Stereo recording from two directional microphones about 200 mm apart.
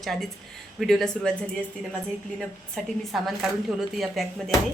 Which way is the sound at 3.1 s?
Centre (ahead or behind).